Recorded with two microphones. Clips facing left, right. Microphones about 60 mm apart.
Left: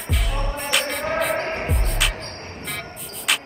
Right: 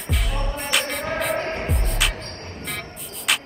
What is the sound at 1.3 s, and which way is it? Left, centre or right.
Music, left.